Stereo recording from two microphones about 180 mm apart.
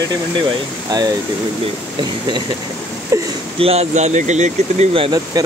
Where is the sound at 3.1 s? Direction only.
15° right (ahead or behind).